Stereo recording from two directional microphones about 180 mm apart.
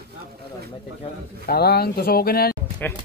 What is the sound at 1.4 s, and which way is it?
Speech, 60° left (ahead or behind).